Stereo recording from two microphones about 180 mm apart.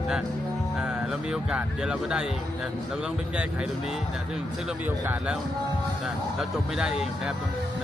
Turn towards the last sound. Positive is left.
turn(degrees=-5)  # may be behind; listen again after turning